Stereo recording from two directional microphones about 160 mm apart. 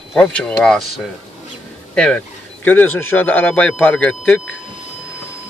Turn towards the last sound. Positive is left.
turn(degrees=10)  # may be behind; listen again after turning